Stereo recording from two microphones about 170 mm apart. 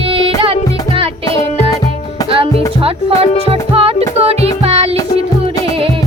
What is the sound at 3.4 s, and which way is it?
Music, 35° right (ahead or behind).